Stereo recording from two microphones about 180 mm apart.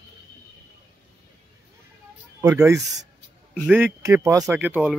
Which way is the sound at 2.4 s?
20° right (ahead or behind).